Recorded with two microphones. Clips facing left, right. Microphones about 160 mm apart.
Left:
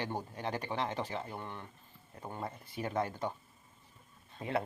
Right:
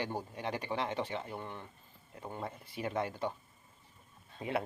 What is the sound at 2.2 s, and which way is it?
Speech, centre (ahead or behind).